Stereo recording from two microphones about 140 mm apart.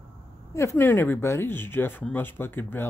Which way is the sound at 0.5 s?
20° left (ahead or behind).